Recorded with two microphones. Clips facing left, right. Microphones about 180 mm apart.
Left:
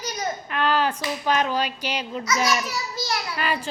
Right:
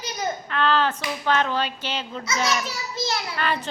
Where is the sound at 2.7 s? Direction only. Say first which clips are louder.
Right 1 dB; 25° right (ahead or behind).